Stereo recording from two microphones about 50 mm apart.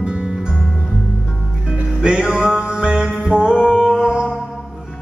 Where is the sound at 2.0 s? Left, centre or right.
Centre.